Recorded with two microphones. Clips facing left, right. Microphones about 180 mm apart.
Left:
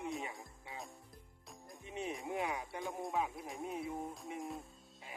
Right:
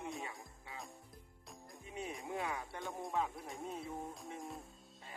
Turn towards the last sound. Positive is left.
turn(degrees=0)  # may be behind; listen again after turning